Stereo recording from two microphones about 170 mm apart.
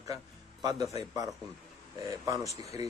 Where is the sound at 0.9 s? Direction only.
20° right (ahead or behind).